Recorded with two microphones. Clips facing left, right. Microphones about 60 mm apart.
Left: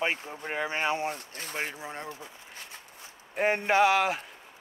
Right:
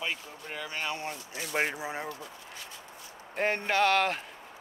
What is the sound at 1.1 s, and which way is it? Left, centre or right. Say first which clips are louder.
Speech: right 1 dB; left.